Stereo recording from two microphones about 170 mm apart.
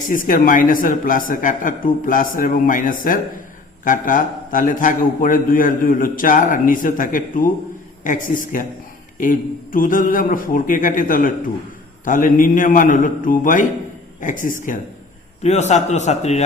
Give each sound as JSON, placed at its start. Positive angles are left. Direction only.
{"t": 0.1, "sound": "a man's voice", "side_deg": 55}